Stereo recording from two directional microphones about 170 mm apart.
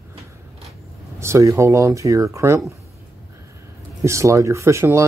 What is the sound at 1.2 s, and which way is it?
Speech, 15° right (ahead or behind).